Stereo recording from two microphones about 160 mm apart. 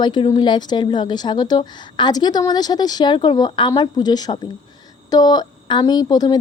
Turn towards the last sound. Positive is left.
turn(degrees=25)  # may be behind; listen again after turning